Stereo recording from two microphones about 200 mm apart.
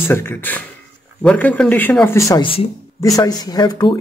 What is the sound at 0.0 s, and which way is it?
Speech, 10° left (ahead or behind).